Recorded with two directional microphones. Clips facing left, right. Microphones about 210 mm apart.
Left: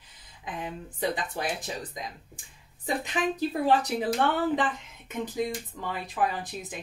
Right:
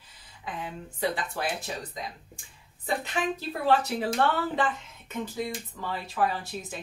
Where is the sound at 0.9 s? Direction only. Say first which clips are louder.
Even; 20° left (ahead or behind).